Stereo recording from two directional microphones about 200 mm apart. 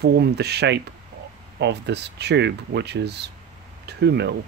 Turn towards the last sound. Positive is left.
turn(degrees=-55)  # may be behind; listen again after turning